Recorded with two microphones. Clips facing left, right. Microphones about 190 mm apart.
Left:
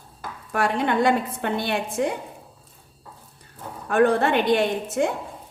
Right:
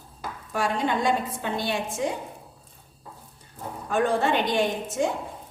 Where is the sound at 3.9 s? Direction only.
60° left (ahead or behind).